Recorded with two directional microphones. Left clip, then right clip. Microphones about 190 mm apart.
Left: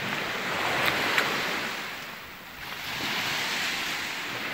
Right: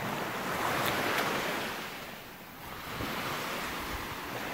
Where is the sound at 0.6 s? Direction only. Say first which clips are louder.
Left 5 dB; 45° left (ahead or behind).